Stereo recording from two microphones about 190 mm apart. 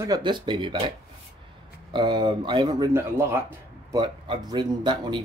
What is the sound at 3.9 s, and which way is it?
Speech, 25° right (ahead or behind).